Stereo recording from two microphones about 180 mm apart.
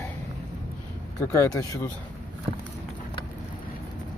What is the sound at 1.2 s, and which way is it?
Speech, 15° left (ahead or behind).